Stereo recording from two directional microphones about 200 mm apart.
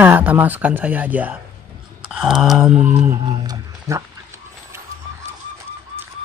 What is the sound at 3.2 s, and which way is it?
Speech, 20° right (ahead or behind).